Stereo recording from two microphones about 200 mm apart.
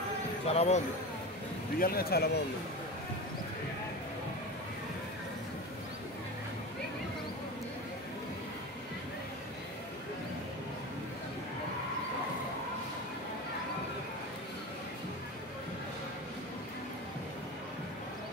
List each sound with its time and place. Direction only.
0.5 s speech: 35° left (ahead or behind)
1.8 s speech: 50° left (ahead or behind)